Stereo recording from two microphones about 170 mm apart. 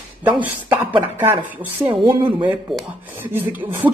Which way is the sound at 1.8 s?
30° right (ahead or behind).